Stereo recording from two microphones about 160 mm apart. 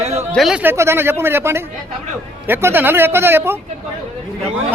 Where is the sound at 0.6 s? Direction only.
15° right (ahead or behind).